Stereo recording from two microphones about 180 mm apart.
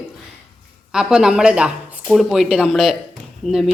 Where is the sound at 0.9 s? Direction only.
5° right (ahead or behind).